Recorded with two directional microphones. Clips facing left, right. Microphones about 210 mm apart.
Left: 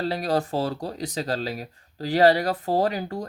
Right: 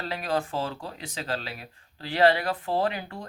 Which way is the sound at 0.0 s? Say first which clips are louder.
Left 5 dB; 35° left (ahead or behind).